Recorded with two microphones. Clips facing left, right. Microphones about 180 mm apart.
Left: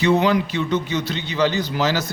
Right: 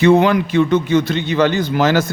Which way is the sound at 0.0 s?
50° right (ahead or behind).